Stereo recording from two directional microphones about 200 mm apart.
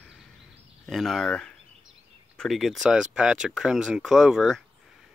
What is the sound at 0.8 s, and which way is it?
Speech, centre (ahead or behind).